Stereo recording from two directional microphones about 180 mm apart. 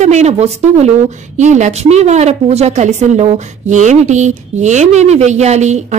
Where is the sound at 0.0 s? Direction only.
40° right (ahead or behind).